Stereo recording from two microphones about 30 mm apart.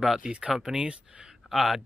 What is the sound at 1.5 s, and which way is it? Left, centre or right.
Speech, centre.